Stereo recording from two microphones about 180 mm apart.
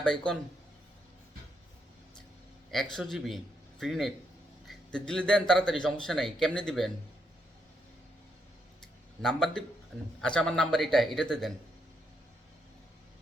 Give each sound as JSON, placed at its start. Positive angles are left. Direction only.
{"t": 0.0, "sound": "a man's voice", "side_deg": 5}
{"t": 2.9, "sound": "a man's voice", "side_deg": 0}
{"t": 9.2, "sound": "a man's voice", "side_deg": 5}